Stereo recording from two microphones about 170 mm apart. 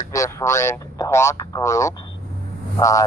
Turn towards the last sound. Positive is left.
turn(degrees=20)  # may be behind; listen again after turning